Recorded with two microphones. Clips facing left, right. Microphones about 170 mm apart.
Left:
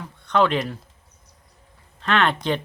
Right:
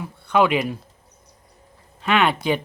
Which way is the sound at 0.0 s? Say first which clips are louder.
Right 1 dB; 10° right (ahead or behind).